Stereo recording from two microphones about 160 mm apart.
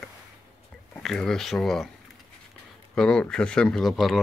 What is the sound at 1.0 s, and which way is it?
Speech, 5° left (ahead or behind).